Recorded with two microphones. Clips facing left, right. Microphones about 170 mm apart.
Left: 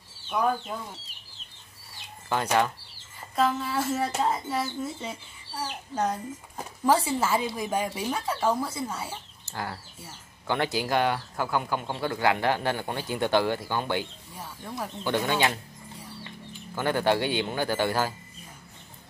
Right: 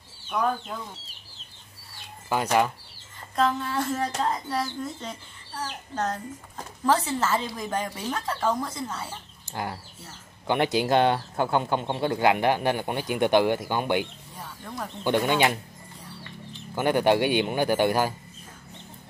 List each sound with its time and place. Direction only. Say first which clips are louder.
0.3 s speech: even; 5° left (ahead or behind)
3.3 s speech: right 1 dB; 5° left (ahead or behind)
9.5 s speech: right 2 dB; 20° right (ahead or behind)
14.4 s speech: even; 10° left (ahead or behind)
15.0 s speech: right 3 dB; 15° right (ahead or behind)
16.7 s speech: right 3 dB; 15° right (ahead or behind)